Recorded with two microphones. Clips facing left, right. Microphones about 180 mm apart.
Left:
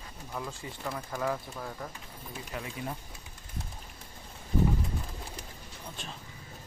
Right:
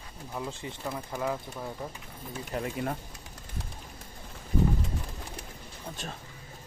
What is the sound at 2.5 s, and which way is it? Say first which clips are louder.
Speech: right 6 dB; 50° right (ahead or behind).